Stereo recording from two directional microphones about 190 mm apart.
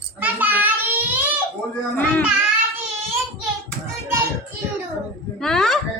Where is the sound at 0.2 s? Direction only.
10° right (ahead or behind).